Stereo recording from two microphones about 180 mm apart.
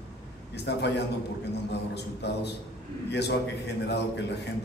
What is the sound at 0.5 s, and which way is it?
A man's voice, 70° left (ahead or behind).